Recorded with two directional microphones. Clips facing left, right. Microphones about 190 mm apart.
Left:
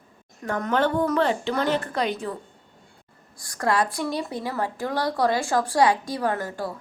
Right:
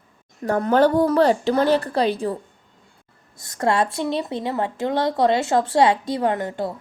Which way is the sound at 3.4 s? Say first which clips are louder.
Right 3 dB; 25° right (ahead or behind).